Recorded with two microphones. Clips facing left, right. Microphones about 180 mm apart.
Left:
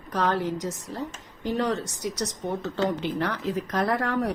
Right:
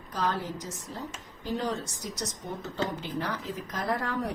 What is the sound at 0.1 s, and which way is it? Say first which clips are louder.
Speech: left 6 dB; 70° left (ahead or behind).